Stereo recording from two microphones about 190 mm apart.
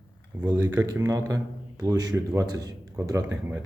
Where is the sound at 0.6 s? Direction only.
20° right (ahead or behind).